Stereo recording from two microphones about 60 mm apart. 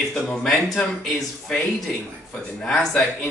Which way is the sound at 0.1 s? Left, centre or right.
Centre.